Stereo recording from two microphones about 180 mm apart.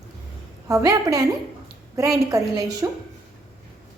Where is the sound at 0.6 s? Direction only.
20° right (ahead or behind).